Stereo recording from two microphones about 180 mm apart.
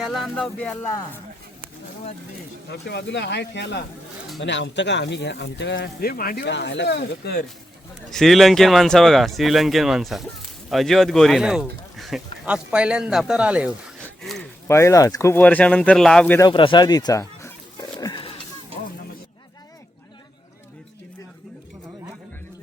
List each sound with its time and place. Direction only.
0.0 s speech: centre (ahead or behind)
2.6 s speech: 70° left (ahead or behind)
4.4 s speech: 80° left; by 7.4 s 60° left (ahead or behind)
8.1 s speech: centre (ahead or behind)
14.7 s speech: 15° left (ahead or behind)
16.4 s speech: 30° left (ahead or behind)
18.0 s pig: 25° left (ahead or behind)